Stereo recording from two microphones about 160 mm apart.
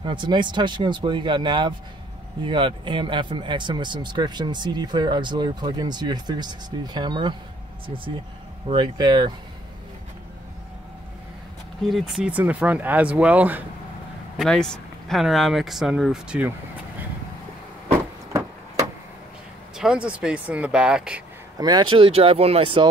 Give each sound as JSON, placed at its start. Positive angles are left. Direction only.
{"t": 0.0, "sound": "speech", "side_deg": -30}
{"t": 8.6, "sound": "speech", "side_deg": -25}
{"t": 11.9, "sound": "speech", "side_deg": -5}
{"t": 14.3, "sound": "speech", "side_deg": 0}
{"t": 19.8, "sound": "speech", "side_deg": -5}
{"t": 21.5, "sound": "speech", "side_deg": -25}